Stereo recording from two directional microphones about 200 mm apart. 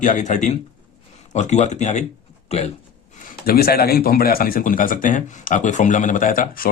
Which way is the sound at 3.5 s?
50° left (ahead or behind).